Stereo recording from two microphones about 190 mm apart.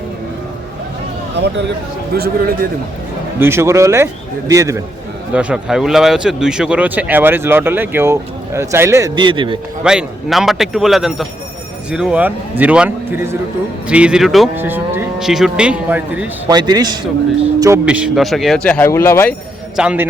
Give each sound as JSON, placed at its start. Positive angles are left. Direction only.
{"t": 1.4, "sound": "speech", "side_deg": -65}
{"t": 2.1, "sound": "a man's voice", "side_deg": -55}
{"t": 3.3, "sound": "speech", "side_deg": -10}
{"t": 9.8, "sound": "speech", "side_deg": -5}
{"t": 16.5, "sound": "a man's voice", "side_deg": -20}
{"t": 17.8, "sound": "speech", "side_deg": -5}
{"t": 19.7, "sound": "speech", "side_deg": -5}